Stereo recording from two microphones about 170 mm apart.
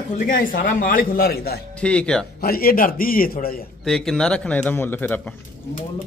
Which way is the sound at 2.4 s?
60° left (ahead or behind).